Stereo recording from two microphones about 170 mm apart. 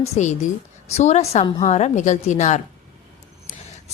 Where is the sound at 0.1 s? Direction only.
45° left (ahead or behind).